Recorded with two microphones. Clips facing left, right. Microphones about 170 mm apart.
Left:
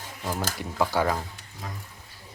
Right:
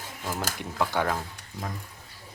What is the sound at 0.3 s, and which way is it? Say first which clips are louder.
Speech: left 2 dB; centre (ahead or behind).